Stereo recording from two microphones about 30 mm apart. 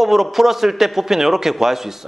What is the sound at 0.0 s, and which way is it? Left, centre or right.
A man's voice, centre.